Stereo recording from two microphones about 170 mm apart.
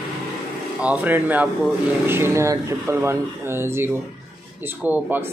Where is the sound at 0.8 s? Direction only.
10° right (ahead or behind).